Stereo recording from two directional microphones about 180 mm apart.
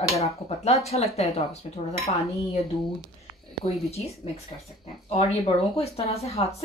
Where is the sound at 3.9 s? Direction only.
35° left (ahead or behind).